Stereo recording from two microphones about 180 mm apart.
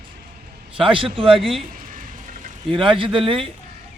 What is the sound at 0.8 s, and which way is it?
Speech, 30° right (ahead or behind).